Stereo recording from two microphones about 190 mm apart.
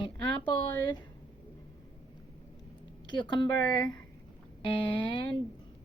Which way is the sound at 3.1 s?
25° left (ahead or behind).